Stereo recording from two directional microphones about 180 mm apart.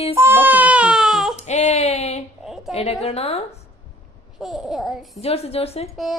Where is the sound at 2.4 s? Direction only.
Centre (ahead or behind).